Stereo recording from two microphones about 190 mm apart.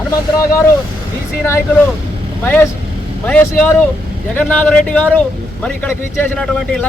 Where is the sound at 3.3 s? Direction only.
10° left (ahead or behind).